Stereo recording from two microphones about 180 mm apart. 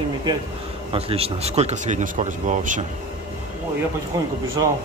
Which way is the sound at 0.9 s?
35° right (ahead or behind).